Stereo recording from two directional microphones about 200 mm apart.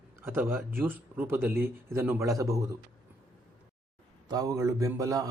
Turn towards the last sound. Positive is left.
turn(degrees=-15)  # may be behind; listen again after turning